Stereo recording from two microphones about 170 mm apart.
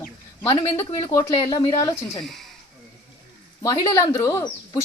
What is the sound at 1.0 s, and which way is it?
Speech, 20° left (ahead or behind).